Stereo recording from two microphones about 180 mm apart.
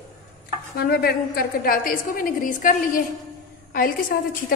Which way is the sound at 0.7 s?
60° left (ahead or behind).